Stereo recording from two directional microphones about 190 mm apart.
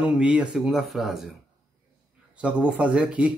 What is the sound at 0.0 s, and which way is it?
Speech, 5° right (ahead or behind).